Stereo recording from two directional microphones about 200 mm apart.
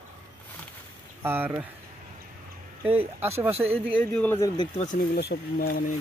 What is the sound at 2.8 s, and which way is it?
Speech, 10° right (ahead or behind).